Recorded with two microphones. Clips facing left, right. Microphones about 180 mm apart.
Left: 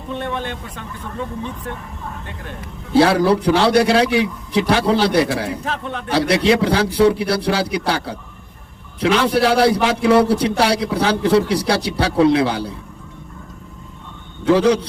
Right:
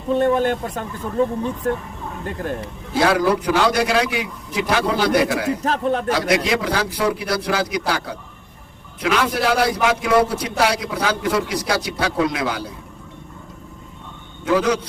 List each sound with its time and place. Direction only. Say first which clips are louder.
0.1 s speech: right 8 dB; 40° right (ahead or behind)
2.9 s a man's voice: left 4 dB; 30° left (ahead or behind)
5.6 s a man's voice: right 6 dB; 40° right (ahead or behind)
6.1 s a man's voice: left 8 dB; 30° left (ahead or behind)
14.4 s a man's voice: left 4 dB; 30° left (ahead or behind)